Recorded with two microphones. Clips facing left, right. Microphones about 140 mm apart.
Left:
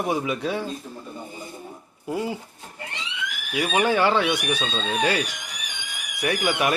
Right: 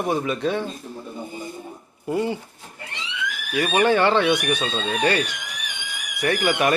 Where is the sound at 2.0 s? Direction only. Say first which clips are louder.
Right 4 dB; centre (ahead or behind).